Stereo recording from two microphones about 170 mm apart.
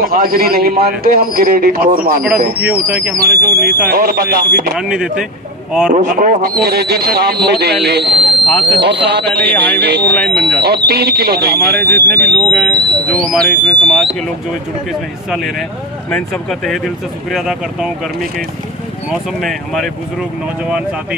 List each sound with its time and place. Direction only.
0.0 s a man's voice: 60° right (ahead or behind)
2.6 s speech: 10° right (ahead or behind)
3.9 s a man's voice: 60° right (ahead or behind)
4.7 s speech: 5° right (ahead or behind)
5.9 s speech: 50° right (ahead or behind); by 10.0 s 80° right
10.0 s speech: 5° left (ahead or behind)
10.6 s speech: 70° right (ahead or behind)
11.8 s speech: 5° left (ahead or behind)
19.4 s speech: centre (ahead or behind)